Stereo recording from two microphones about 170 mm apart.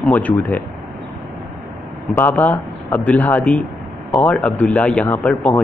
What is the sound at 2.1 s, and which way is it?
Speech, 10° left (ahead or behind).